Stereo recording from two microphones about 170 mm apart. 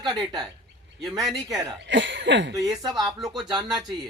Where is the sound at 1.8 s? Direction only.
90° right.